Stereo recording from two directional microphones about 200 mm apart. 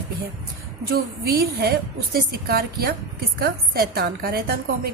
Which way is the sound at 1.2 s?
50° right (ahead or behind).